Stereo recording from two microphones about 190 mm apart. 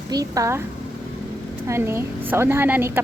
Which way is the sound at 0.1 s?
20° right (ahead or behind).